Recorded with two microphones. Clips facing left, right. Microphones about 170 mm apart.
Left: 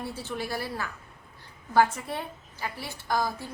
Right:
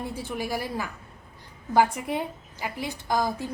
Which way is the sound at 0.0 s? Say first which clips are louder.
Right 2 dB; 10° right (ahead or behind).